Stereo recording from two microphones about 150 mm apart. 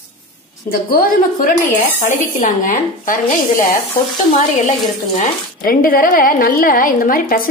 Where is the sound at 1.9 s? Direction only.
60° left (ahead or behind).